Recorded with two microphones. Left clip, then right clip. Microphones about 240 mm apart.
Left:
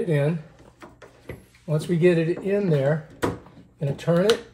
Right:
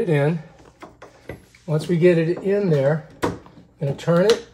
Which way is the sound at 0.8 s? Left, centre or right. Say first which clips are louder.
Right 4 dB; centre.